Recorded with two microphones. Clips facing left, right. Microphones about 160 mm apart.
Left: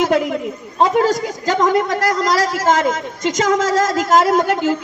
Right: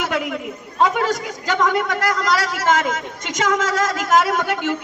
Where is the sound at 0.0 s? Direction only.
35° left (ahead or behind).